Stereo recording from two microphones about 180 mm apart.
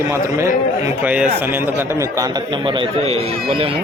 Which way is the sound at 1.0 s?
10° right (ahead or behind).